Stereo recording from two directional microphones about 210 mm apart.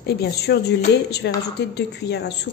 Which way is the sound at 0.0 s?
50° left (ahead or behind).